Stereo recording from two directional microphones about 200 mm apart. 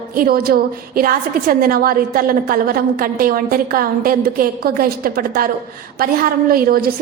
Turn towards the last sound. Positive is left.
turn(degrees=-50)  # may be behind; listen again after turning